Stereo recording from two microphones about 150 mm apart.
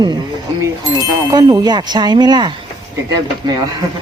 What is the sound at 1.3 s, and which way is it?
Speech, 25° right (ahead or behind).